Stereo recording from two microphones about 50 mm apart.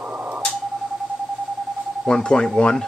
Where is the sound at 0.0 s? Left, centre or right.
Right.